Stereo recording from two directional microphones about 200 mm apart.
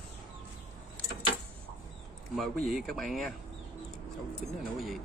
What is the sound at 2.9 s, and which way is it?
Speech, centre (ahead or behind).